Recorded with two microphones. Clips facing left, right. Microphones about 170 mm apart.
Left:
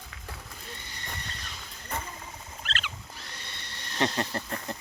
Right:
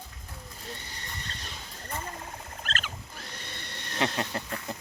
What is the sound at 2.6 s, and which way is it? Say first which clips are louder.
Rodents: right 1 dB; 45° right (ahead or behind).